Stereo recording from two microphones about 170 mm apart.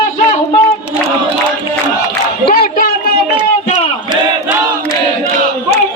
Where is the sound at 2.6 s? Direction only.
60° left (ahead or behind).